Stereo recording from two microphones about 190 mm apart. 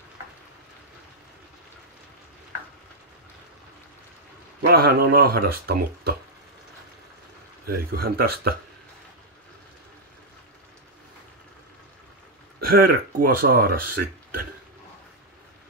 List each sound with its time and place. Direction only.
4.6 s speech: 55° right (ahead or behind)
7.6 s speech: 50° right (ahead or behind)
12.5 s speech: 55° right (ahead or behind)